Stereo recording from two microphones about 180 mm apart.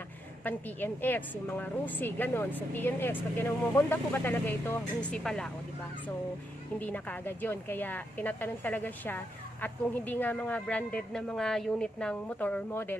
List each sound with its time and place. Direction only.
0.4 s speech: 10° left (ahead or behind)
6.8 s speech: 10° left (ahead or behind)